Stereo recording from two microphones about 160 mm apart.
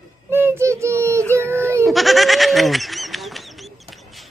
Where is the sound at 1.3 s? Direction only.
15° right (ahead or behind).